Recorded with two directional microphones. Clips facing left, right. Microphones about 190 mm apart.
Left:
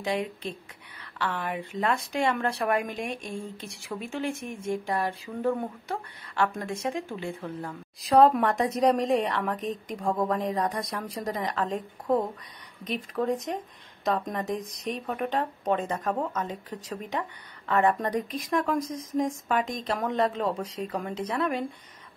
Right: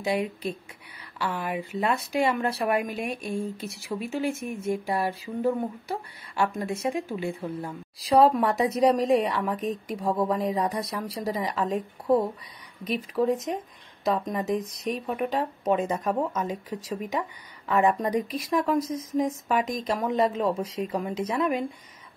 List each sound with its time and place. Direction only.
0.0 s a woman's voice: 10° right (ahead or behind)
14.6 s speech: 35° left (ahead or behind)
14.9 s a woman's voice: 5° right (ahead or behind)